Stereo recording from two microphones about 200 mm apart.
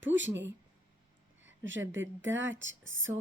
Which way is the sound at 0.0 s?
65° right (ahead or behind).